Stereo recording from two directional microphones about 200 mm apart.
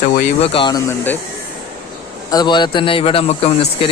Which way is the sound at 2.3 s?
20° left (ahead or behind).